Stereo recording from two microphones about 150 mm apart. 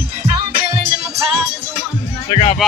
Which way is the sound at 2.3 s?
40° left (ahead or behind).